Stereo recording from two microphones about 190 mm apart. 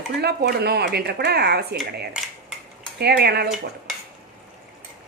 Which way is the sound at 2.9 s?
60° right (ahead or behind).